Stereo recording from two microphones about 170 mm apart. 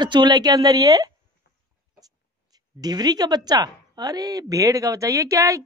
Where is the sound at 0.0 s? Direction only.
25° right (ahead or behind).